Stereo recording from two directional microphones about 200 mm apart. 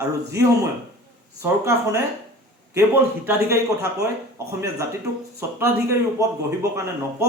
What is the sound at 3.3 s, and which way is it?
Speech, 15° right (ahead or behind).